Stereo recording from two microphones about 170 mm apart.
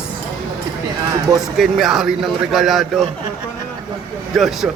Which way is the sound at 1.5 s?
Centre (ahead or behind).